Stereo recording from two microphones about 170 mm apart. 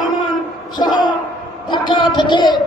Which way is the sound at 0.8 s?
25° left (ahead or behind).